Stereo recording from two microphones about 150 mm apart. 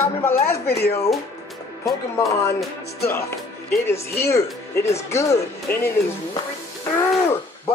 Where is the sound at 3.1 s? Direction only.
15° left (ahead or behind).